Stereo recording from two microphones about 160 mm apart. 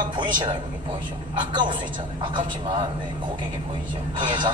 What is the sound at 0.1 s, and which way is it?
Speech, 30° right (ahead or behind).